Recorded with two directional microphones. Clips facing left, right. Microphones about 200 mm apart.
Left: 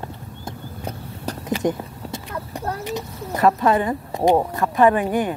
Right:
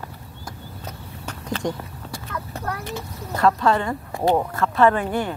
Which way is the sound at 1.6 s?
20° left (ahead or behind).